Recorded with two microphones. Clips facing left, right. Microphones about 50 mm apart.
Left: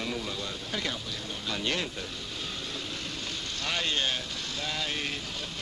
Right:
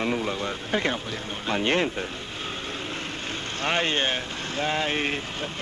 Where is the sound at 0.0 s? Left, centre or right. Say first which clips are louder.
Right 8 dB; right.